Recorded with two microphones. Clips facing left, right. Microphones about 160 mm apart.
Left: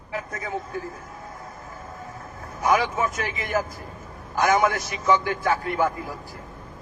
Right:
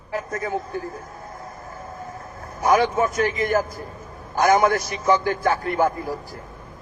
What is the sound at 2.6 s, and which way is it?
A man's voice, 40° right (ahead or behind).